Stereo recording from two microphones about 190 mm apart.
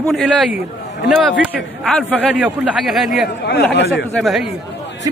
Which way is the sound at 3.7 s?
65° left (ahead or behind).